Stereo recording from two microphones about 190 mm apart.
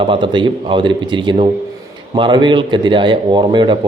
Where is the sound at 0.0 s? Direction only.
25° right (ahead or behind).